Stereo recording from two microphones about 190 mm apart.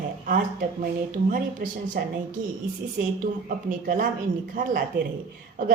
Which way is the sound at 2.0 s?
50° right (ahead or behind).